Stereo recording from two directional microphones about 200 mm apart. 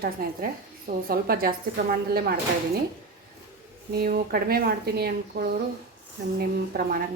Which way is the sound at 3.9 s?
50° right (ahead or behind).